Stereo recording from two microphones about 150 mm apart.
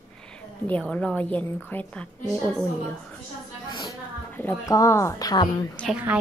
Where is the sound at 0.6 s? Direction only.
10° left (ahead or behind).